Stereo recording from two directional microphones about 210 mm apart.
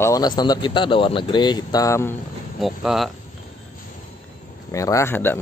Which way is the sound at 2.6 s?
Centre (ahead or behind).